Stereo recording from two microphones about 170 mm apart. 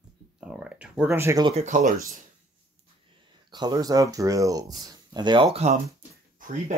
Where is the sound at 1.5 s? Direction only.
40° right (ahead or behind).